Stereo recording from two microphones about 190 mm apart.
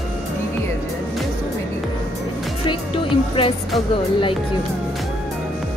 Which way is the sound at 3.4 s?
30° left (ahead or behind).